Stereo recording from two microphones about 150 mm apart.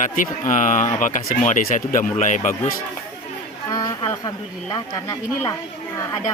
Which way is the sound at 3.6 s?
25° left (ahead or behind).